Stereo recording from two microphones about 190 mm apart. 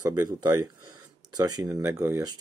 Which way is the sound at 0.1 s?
20° right (ahead or behind).